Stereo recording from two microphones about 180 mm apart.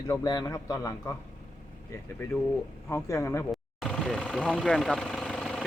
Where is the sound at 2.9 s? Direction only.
15° left (ahead or behind).